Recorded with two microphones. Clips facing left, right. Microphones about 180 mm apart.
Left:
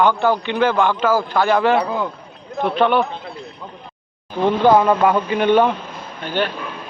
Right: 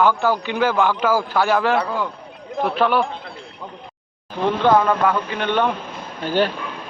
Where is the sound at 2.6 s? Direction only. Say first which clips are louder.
Left 2 dB; 5° right (ahead or behind).